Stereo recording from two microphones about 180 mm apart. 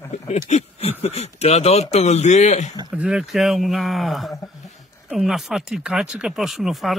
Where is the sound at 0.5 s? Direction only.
35° left (ahead or behind).